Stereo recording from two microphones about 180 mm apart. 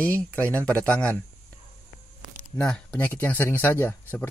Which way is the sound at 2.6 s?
5° left (ahead or behind).